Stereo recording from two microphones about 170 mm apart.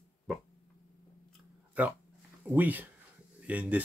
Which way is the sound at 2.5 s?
10° right (ahead or behind).